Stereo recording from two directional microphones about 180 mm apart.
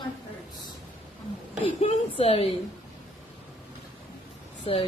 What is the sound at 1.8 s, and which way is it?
Speech, 35° left (ahead or behind).